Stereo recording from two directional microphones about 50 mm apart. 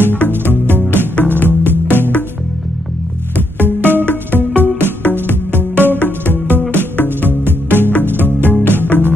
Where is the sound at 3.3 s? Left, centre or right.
Right.